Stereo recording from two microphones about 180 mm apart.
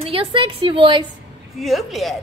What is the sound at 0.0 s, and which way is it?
Speech, 30° right (ahead or behind).